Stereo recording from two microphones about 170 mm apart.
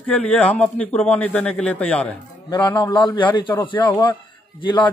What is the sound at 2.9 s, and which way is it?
Speech, 30° left (ahead or behind).